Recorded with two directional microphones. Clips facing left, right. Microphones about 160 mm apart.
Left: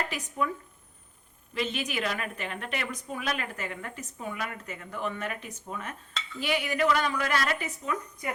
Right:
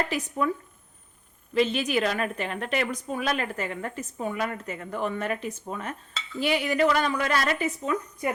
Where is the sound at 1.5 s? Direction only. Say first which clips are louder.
Right 8 dB; 35° right (ahead or behind).